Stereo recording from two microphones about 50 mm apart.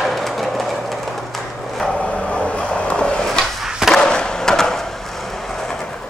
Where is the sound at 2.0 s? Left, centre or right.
Left.